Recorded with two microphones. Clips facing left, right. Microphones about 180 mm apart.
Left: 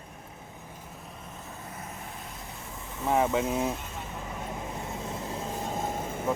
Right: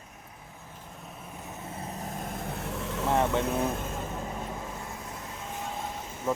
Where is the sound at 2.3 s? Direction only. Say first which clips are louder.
Right 8 dB; 65° right (ahead or behind); by 3.0 s 85° right.